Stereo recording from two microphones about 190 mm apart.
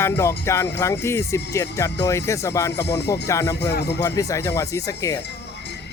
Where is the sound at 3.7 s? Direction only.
60° left (ahead or behind).